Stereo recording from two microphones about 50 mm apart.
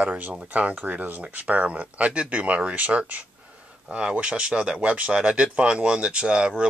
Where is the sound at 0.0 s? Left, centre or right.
Right.